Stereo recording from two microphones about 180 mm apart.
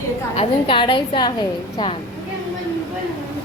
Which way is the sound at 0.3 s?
30° left (ahead or behind).